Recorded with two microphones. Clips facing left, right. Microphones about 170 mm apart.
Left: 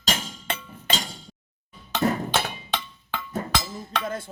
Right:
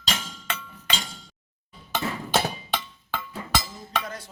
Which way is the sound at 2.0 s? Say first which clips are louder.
Left 10 dB; 45° left (ahead or behind).